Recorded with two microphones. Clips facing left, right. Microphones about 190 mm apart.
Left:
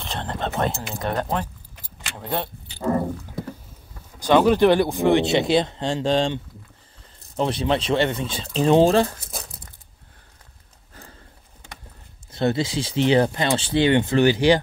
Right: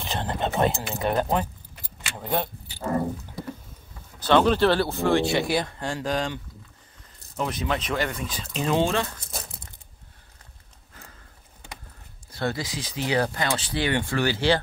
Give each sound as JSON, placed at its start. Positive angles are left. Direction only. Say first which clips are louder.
{"t": 0.0, "sound": "speech", "louder": "right 1 dB", "side_deg": -5}
{"t": 4.2, "sound": "speech", "louder": "left 3 dB", "side_deg": 10}
{"t": 12.3, "sound": "speech", "louder": "left 7 dB", "side_deg": 25}